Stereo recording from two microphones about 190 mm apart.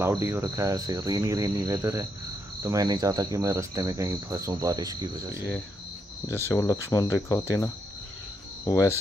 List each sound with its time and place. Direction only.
0.0 s speech: 15° right (ahead or behind)
6.2 s speech: 15° left (ahead or behind)